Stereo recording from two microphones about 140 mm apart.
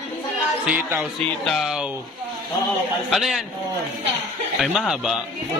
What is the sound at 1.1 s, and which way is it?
Speech, 5° left (ahead or behind).